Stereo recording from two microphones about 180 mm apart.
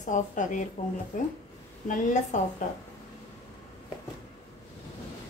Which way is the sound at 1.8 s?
45° left (ahead or behind).